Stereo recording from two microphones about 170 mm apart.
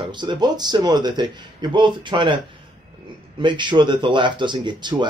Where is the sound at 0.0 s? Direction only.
25° right (ahead or behind).